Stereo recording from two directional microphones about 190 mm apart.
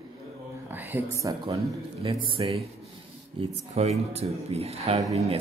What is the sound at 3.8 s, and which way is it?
Speech, 35° right (ahead or behind).